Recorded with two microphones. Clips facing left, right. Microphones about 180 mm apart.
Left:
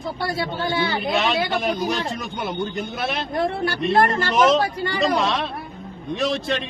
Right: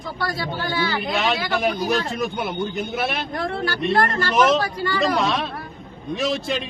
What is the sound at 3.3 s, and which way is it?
Speech, 25° left (ahead or behind).